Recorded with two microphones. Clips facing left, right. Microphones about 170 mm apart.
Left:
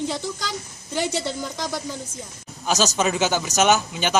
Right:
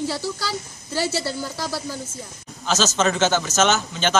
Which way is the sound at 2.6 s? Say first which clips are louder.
Right 1 dB; 15° left (ahead or behind).